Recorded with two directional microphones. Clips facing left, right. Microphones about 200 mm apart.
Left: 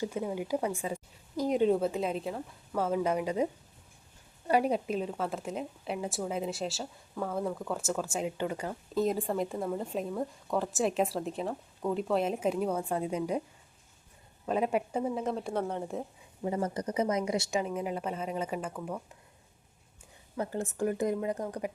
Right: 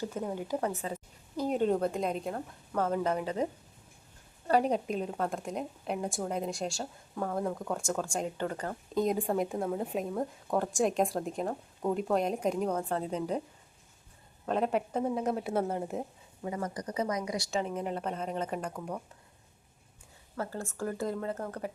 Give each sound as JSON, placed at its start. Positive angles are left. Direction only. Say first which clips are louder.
{"t": 0.0, "sound": "a woman's voice", "louder": "left 2 dB", "side_deg": 10}
{"t": 14.4, "sound": "speech", "louder": "even", "side_deg": 10}
{"t": 16.4, "sound": "a woman's voice", "louder": "left 4 dB", "side_deg": 30}
{"t": 17.6, "sound": "speech", "louder": "even", "side_deg": 5}
{"t": 20.3, "sound": "a woman's voice", "louder": "left 3 dB", "side_deg": 20}